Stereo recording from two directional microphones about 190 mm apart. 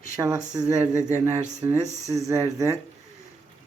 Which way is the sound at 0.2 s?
20° right (ahead or behind).